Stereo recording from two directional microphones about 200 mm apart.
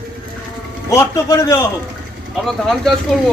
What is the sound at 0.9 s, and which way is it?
Speech, 15° left (ahead or behind).